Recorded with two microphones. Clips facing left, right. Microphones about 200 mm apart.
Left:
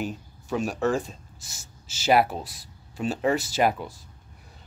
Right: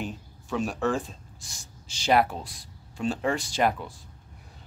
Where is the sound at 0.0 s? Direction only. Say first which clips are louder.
Left 3 dB; centre (ahead or behind).